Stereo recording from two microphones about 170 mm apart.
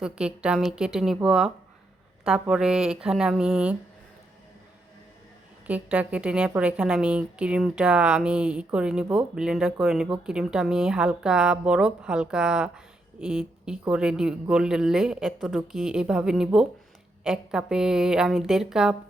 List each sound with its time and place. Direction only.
0.0 s a woman's voice: 5° right (ahead or behind)
5.6 s a woman's voice: 10° right (ahead or behind)